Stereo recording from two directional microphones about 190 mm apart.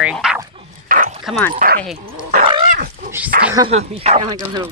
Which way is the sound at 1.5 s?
45° right (ahead or behind).